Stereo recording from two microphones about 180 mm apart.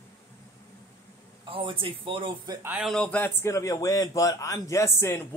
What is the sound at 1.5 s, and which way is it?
A man's voice, 30° right (ahead or behind).